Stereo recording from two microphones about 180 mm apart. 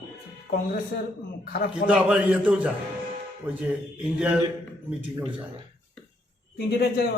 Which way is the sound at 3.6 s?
5° right (ahead or behind).